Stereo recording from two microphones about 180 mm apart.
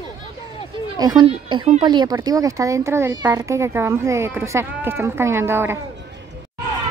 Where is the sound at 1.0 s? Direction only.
25° right (ahead or behind).